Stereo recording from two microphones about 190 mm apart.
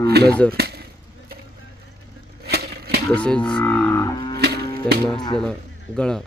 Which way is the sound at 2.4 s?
55° right (ahead or behind).